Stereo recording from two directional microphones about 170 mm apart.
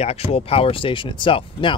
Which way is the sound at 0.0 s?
35° left (ahead or behind).